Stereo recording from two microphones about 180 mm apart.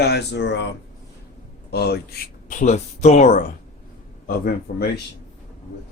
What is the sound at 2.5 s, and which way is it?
Speech, 40° left (ahead or behind).